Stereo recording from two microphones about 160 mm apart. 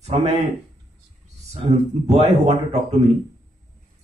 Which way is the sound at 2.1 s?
40° right (ahead or behind).